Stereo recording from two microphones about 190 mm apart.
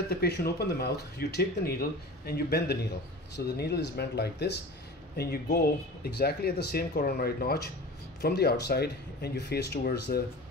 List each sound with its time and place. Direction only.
0.1 s speech: 55° left (ahead or behind)